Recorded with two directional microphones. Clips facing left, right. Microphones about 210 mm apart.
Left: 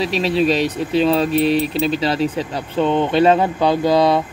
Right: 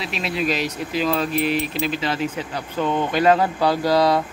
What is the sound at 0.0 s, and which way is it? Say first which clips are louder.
Speech: left 8 dB; 35° left (ahead or behind).